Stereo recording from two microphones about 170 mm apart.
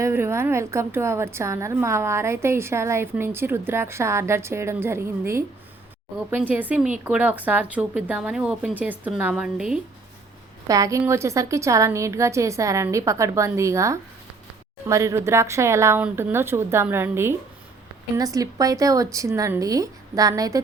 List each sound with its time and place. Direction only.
0.0 s a woman's voice: 15° right (ahead or behind)
10.7 s a woman's voice: 20° right (ahead or behind)